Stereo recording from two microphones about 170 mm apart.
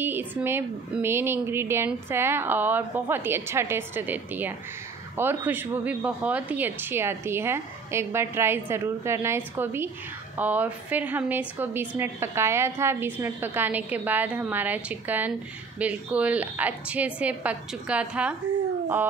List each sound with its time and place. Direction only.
0.0 s speech: 10° right (ahead or behind)